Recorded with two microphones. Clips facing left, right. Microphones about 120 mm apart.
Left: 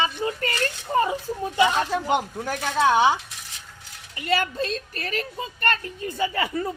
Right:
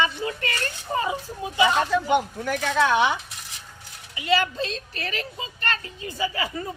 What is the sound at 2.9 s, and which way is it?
Speech, 30° left (ahead or behind).